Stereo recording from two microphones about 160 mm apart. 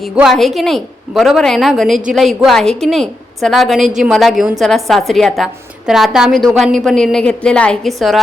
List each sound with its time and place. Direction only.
0.0 s a woman's voice: centre (ahead or behind)